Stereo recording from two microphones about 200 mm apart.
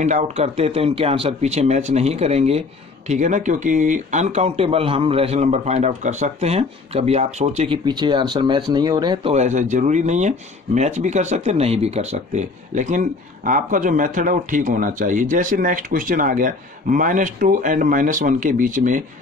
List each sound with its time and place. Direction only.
0.0 s speech: 35° right (ahead or behind)
9.3 s speech: 35° right (ahead or behind)